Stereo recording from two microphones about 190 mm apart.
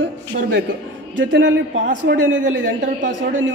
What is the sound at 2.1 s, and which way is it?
Speech, 65° right (ahead or behind).